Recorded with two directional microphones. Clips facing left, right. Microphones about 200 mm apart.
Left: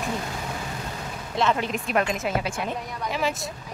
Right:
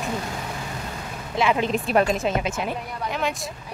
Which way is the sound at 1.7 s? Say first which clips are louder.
Right 4 dB; 35° right (ahead or behind).